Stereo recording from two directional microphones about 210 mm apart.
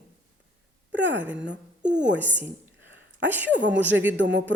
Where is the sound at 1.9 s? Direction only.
60° right (ahead or behind).